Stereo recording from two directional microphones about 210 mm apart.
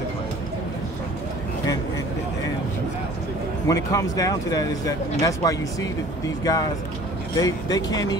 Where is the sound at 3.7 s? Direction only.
15° left (ahead or behind).